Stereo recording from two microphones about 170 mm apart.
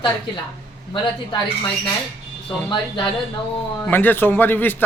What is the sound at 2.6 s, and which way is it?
Speech, 30° left (ahead or behind).